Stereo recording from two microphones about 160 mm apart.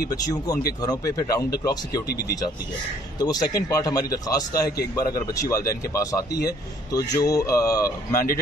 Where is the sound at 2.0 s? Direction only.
80° left.